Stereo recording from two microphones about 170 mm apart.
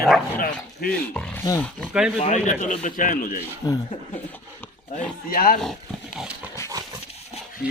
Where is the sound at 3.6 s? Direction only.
20° left (ahead or behind).